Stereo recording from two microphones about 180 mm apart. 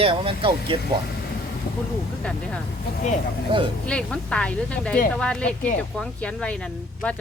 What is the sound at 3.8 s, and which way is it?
Speech, 5° left (ahead or behind).